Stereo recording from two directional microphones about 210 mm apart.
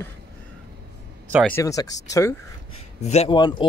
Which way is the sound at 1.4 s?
15° left (ahead or behind).